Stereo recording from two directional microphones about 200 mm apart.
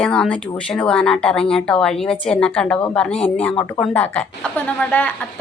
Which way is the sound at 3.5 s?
20° left (ahead or behind).